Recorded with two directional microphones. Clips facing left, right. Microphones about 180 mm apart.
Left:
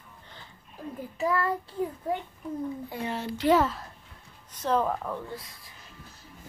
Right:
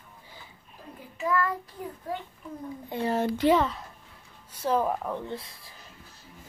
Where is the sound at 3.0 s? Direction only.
50° right (ahead or behind).